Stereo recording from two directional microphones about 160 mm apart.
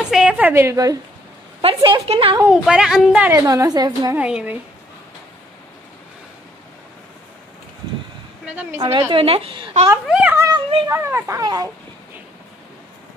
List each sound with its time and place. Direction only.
0.1 s a woman's voice: 5° right (ahead or behind)
1.6 s a woman's voice: 35° right (ahead or behind)
2.5 s a woman's voice: 5° right (ahead or behind)
3.3 s a woman's voice: 20° right (ahead or behind)
4.2 s a child's voice: 5° right (ahead or behind)
8.5 s a child's voice: 15° right (ahead or behind)
9.1 s a woman's voice: 35° right (ahead or behind)
10.0 s a child's voice: 10° right (ahead or behind)
10.5 s a sound: 35° right (ahead or behind)
10.9 s a woman's voice: 15° right (ahead or behind)